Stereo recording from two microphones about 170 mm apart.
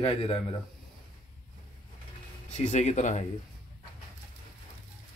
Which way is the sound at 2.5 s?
45° left (ahead or behind).